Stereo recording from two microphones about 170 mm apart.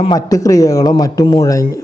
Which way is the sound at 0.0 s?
25° left (ahead or behind).